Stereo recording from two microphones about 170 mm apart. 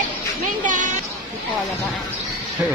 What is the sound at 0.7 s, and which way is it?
Speech, 50° right (ahead or behind).